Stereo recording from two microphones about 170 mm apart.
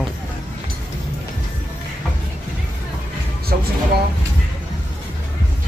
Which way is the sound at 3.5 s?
55° right (ahead or behind).